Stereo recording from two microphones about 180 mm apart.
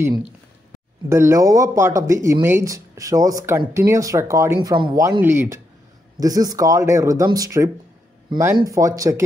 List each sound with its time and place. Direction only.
1.0 s speech: 15° right (ahead or behind)